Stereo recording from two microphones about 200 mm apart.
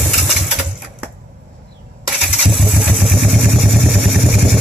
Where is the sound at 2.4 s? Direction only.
Centre (ahead or behind).